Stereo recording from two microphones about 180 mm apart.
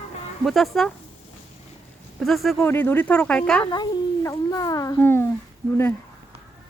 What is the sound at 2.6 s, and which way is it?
Speech, 10° left (ahead or behind).